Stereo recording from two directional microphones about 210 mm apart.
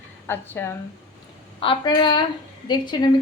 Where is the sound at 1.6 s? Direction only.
25° left (ahead or behind).